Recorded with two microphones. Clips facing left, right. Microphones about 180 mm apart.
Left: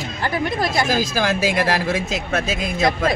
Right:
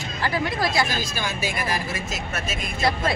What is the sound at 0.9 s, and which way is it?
Speech, 90° left.